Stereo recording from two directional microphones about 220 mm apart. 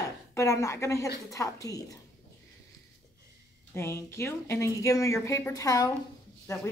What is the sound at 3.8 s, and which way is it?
A woman's voice, 10° left (ahead or behind).